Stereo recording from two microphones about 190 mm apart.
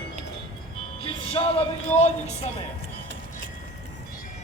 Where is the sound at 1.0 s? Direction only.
30° left (ahead or behind).